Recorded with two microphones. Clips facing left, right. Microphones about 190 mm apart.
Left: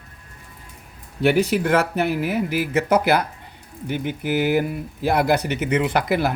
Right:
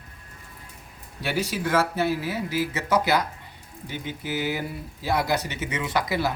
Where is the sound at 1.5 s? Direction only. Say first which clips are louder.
Left 4 dB; 60° left (ahead or behind).